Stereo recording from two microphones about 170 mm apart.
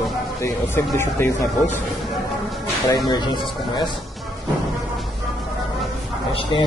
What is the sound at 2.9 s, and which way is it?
Speech, 25° left (ahead or behind).